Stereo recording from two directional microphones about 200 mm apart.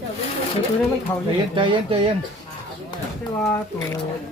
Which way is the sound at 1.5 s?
25° right (ahead or behind).